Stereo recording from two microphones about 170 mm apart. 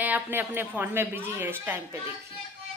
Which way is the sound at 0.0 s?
10° right (ahead or behind).